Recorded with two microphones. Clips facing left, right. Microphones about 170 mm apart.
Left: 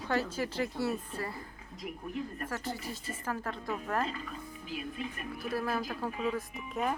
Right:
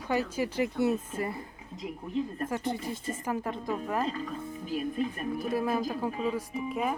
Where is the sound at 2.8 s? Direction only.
50° right (ahead or behind).